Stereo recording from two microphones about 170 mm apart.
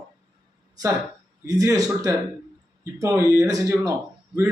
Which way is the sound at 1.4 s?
20° right (ahead or behind).